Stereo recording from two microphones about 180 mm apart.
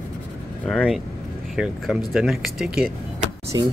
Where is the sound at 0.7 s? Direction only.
Centre (ahead or behind).